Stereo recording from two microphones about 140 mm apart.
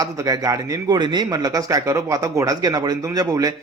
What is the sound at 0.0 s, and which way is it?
Speech, 25° right (ahead or behind).